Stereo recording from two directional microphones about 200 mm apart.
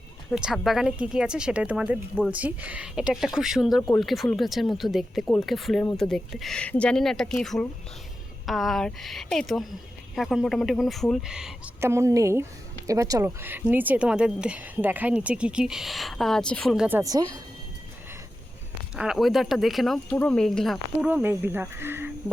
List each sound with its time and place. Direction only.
0.3 s speech: centre (ahead or behind)
17.0 s a woman's voice: 20° right (ahead or behind)
18.9 s speech: centre (ahead or behind)